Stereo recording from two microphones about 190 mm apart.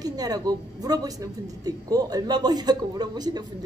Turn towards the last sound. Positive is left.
turn(degrees=-20)  # may be behind; listen again after turning